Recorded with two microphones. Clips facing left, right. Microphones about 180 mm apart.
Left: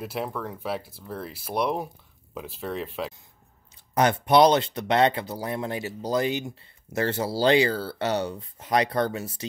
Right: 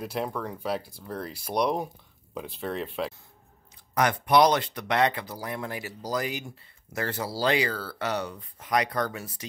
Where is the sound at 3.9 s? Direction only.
25° left (ahead or behind).